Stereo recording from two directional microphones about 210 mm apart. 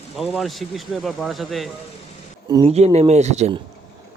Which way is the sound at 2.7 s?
30° right (ahead or behind).